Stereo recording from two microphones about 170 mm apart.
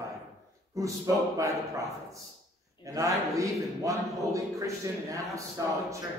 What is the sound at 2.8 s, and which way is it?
A man's voice, 20° right (ahead or behind).